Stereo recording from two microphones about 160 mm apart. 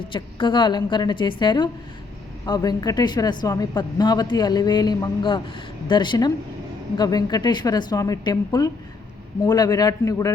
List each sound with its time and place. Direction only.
0.0 s a woman's voice: 30° left (ahead or behind)